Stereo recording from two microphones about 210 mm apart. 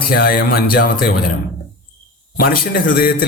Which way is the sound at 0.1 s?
45° left (ahead or behind).